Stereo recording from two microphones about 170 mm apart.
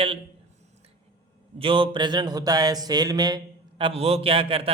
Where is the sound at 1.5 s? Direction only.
30° right (ahead or behind).